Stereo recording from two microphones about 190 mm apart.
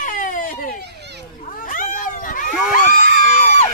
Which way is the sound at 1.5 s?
45° left (ahead or behind).